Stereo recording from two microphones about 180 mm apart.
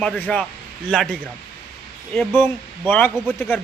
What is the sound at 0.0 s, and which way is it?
A man's voice, 5° left (ahead or behind).